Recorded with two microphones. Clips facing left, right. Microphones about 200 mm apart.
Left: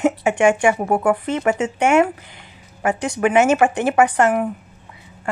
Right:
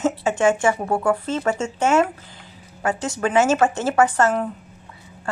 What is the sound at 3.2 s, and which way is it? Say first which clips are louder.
A woman's voice: left 3 dB; 15° left (ahead or behind).